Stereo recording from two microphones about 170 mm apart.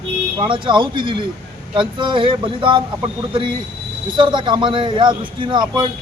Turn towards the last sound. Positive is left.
turn(degrees=-25)  # may be behind; listen again after turning